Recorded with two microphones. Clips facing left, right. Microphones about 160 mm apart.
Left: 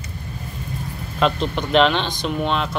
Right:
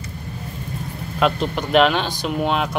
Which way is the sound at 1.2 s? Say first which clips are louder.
Even; 5° right (ahead or behind).